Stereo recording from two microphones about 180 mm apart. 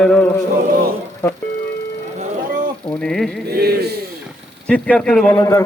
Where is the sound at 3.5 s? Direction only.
60° right (ahead or behind).